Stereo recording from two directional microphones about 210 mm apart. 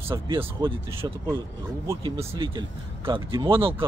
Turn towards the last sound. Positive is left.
turn(degrees=-25)  # may be behind; listen again after turning